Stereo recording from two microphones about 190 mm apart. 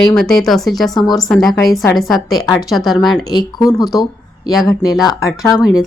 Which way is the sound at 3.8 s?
Centre (ahead or behind).